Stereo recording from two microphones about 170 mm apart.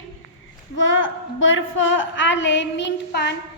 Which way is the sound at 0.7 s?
90° left.